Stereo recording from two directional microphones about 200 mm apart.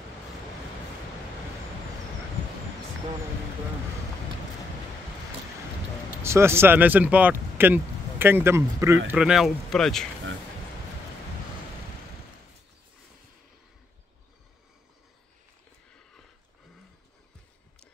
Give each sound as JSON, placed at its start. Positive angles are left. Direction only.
{"t": 6.2, "sound": "speech", "side_deg": -15}